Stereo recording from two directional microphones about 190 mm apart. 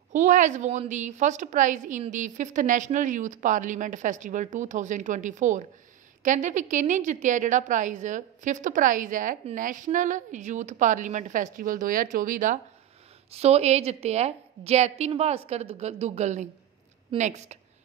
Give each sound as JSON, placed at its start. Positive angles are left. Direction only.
{"t": 0.1, "sound": "a woman's voice", "side_deg": -40}
{"t": 13.3, "sound": "a woman's voice", "side_deg": -35}